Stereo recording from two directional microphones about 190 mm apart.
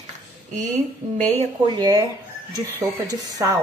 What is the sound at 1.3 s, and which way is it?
Speech, 30° right (ahead or behind).